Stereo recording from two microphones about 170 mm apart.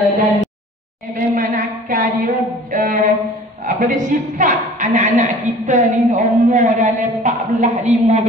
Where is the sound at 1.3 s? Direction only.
50° right (ahead or behind).